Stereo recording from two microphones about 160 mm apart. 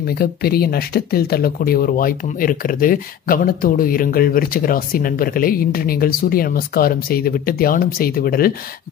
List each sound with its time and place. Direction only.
0.1 s speech: 75° left (ahead or behind)